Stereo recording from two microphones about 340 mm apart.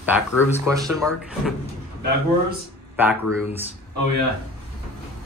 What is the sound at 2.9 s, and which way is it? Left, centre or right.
Speech, centre.